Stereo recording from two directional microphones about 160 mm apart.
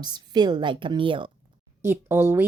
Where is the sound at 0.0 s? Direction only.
25° right (ahead or behind).